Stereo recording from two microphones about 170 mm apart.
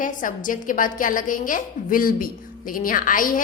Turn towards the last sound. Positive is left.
turn(degrees=55)  # may be behind; listen again after turning